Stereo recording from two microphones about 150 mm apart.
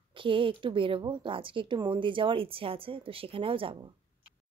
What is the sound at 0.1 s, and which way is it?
A woman's voice, 35° right (ahead or behind).